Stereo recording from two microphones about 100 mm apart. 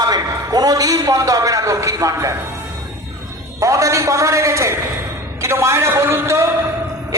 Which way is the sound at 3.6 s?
30° right (ahead or behind).